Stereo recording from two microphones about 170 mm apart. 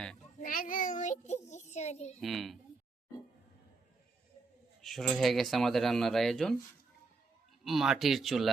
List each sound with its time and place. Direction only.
0.3 s child singing: 55° left (ahead or behind)
2.2 s speech: centre (ahead or behind)
4.8 s speech: centre (ahead or behind)
7.6 s speech: centre (ahead or behind)